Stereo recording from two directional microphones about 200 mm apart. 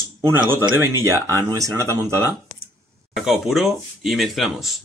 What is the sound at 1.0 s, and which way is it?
Speech, 15° right (ahead or behind).